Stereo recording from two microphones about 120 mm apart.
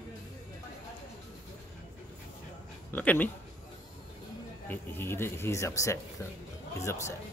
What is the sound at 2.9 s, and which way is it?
Speech, 15° left (ahead or behind).